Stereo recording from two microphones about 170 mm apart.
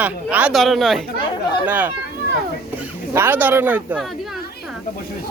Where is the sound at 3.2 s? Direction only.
10° right (ahead or behind).